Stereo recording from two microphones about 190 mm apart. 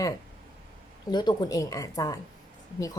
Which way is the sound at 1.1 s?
20° left (ahead or behind).